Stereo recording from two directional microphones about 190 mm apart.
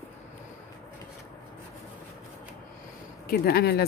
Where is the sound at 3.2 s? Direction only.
55° left (ahead or behind).